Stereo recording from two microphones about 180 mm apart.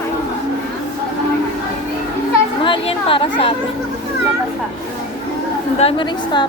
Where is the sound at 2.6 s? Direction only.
30° left (ahead or behind).